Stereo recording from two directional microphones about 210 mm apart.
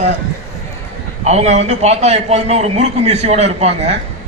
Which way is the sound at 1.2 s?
30° right (ahead or behind).